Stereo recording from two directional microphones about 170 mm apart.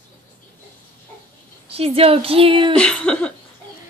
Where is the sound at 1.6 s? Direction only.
35° right (ahead or behind).